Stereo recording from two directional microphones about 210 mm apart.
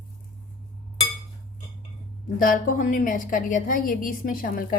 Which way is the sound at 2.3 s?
40° left (ahead or behind).